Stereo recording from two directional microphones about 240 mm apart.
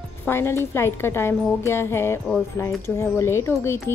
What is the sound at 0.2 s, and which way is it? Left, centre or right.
A woman's voice, centre.